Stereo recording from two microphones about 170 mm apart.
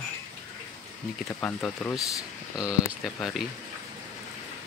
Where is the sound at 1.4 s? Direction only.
10° left (ahead or behind).